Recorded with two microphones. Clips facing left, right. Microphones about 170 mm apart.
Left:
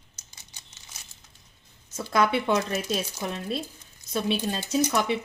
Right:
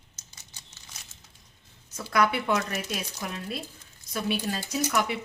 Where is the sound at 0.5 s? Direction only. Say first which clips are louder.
Even; 10° left (ahead or behind).